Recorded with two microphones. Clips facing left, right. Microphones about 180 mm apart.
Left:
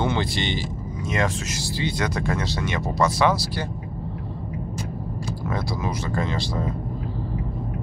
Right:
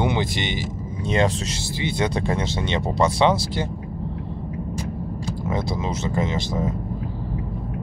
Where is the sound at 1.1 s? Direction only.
30° right (ahead or behind).